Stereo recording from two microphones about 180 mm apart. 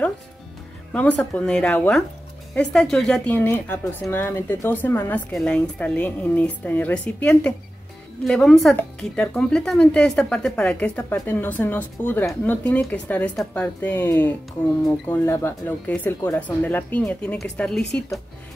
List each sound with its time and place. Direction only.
0.9 s speech: 5° left (ahead or behind)